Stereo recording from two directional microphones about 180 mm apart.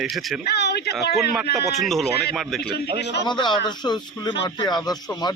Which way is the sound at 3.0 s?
70° left (ahead or behind).